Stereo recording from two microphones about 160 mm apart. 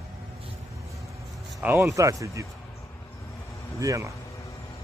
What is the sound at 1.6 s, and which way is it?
Speech, 15° right (ahead or behind).